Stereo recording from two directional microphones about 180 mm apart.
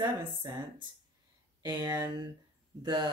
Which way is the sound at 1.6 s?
20° right (ahead or behind).